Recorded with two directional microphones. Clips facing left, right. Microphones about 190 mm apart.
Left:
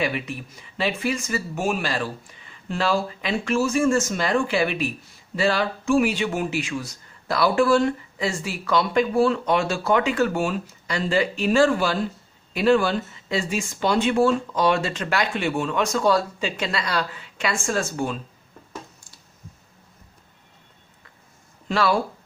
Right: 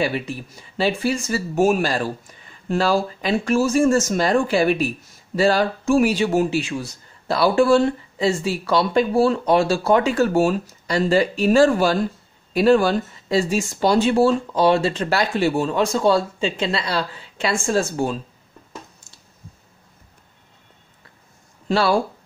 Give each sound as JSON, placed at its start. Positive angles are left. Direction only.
{"t": 0.0, "sound": "speech", "side_deg": -35}
{"t": 21.6, "sound": "speech", "side_deg": -30}